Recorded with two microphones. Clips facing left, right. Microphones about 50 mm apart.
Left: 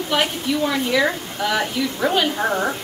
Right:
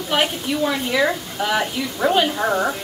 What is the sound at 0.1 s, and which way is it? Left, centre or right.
A woman's voice, centre.